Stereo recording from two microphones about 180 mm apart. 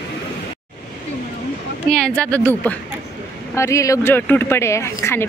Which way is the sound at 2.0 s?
5° left (ahead or behind).